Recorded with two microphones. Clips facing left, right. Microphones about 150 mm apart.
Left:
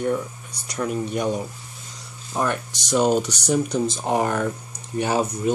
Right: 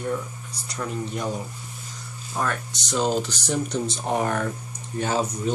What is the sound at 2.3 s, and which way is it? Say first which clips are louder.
Speech: left 3 dB; 20° left (ahead or behind).